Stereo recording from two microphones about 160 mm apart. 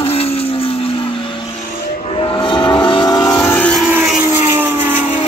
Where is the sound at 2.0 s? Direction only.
35° left (ahead or behind).